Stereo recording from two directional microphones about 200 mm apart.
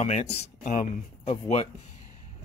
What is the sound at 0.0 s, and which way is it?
Speech, 30° left (ahead or behind).